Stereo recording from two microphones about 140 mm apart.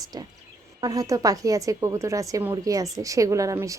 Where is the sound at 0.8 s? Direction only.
25° right (ahead or behind).